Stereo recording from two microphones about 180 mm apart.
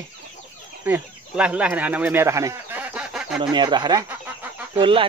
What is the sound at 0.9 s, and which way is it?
Speech, 5° right (ahead or behind).